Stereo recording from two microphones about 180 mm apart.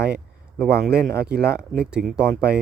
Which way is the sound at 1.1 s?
60° right (ahead or behind).